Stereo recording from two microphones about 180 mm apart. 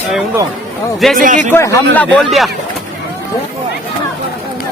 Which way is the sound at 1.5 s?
15° left (ahead or behind).